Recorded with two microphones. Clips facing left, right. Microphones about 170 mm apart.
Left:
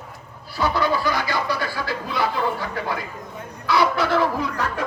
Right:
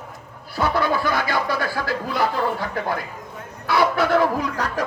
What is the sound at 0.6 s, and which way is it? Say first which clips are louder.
Speech: right 1 dB; 50° right (ahead or behind).